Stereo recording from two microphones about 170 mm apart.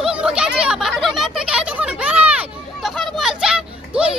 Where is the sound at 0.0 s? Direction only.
5° right (ahead or behind).